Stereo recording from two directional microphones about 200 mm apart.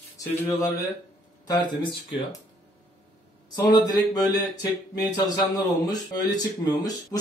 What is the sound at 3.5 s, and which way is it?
Speech, 20° left (ahead or behind).